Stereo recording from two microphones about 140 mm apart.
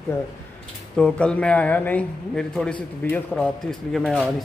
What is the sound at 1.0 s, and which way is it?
A man's voice, 5° left (ahead or behind).